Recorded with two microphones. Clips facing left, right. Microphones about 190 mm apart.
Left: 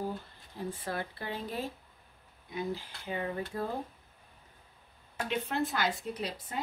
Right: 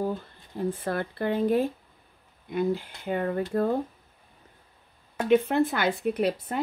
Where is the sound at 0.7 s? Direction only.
55° right (ahead or behind).